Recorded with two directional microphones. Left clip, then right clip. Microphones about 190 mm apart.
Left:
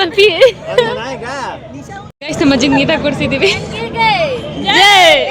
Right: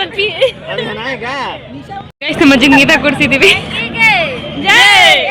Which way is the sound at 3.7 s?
55° left (ahead or behind).